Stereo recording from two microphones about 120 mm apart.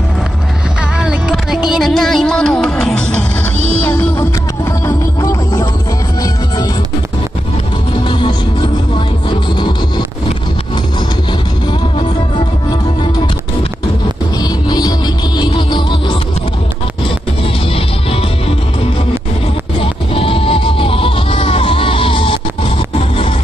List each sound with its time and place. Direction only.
0.9 s music: 5° right (ahead or behind)
3.5 s music: 60° right (ahead or behind)
4.8 s music: 25° left (ahead or behind)
8.1 s music: 45° left (ahead or behind)
14.4 s music: 35° left (ahead or behind)
19.8 s music: 50° left (ahead or behind)